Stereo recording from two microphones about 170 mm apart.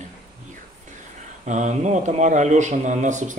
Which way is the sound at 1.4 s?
45° right (ahead or behind).